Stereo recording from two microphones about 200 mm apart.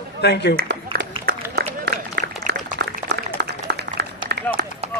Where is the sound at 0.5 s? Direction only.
50° right (ahead or behind).